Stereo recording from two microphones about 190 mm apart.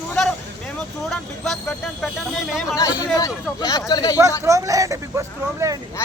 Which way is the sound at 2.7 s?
20° left (ahead or behind).